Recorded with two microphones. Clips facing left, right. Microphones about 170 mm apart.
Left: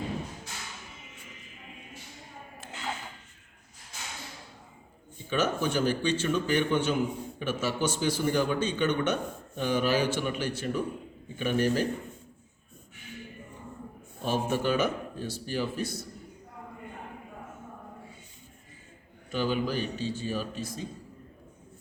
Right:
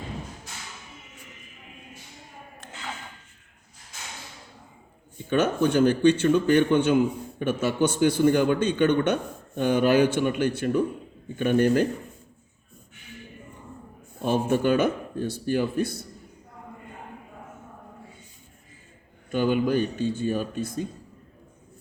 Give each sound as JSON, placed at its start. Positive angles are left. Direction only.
{"t": 5.3, "sound": "a man's voice", "side_deg": -55}
{"t": 14.3, "sound": "a man's voice", "side_deg": -55}
{"t": 19.3, "sound": "a man's voice", "side_deg": -55}